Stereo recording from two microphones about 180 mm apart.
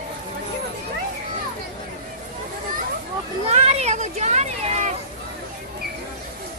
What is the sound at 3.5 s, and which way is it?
Children playing, 40° right (ahead or behind).